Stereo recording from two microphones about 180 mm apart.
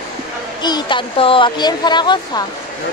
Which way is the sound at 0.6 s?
25° left (ahead or behind).